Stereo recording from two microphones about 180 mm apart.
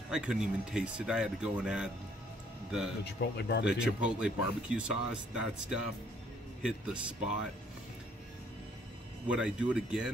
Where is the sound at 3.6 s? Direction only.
5° right (ahead or behind).